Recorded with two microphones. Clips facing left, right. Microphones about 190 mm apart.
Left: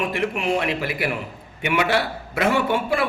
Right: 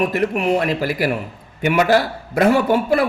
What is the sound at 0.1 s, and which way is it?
A man's voice, 40° right (ahead or behind).